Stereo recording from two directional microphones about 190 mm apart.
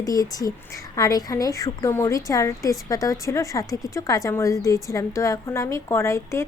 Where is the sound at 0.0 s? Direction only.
20° left (ahead or behind).